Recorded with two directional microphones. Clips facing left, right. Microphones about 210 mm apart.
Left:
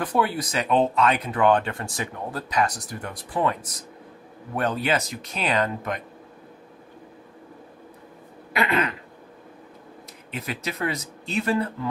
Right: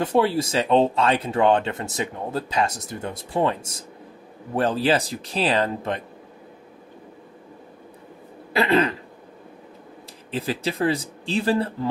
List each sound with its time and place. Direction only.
0.0 s speech: 25° right (ahead or behind)
8.5 s speech: 30° right (ahead or behind)
10.3 s speech: 30° right (ahead or behind)